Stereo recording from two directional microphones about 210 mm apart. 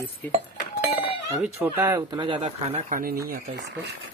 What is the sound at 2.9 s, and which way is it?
Speech, 45° right (ahead or behind).